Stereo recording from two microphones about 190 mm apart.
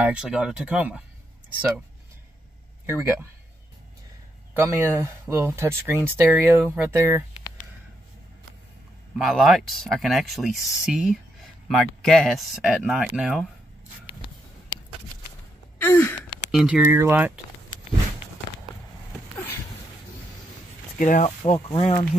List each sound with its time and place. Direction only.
0.0 s speech: 5° right (ahead or behind)
2.9 s speech: 10° right (ahead or behind)
4.6 s speech: 10° right (ahead or behind)
9.2 s speech: centre (ahead or behind)
15.8 s gasp: 10° left (ahead or behind)
16.5 s speech: 5° right (ahead or behind)
21.0 s speech: 40° left (ahead or behind)